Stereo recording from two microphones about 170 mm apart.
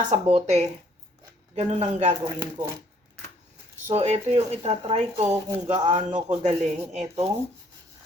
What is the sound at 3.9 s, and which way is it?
Speech, 40° right (ahead or behind).